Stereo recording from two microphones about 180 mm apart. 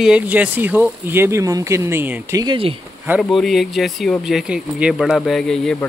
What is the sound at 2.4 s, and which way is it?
Speech, 30° right (ahead or behind).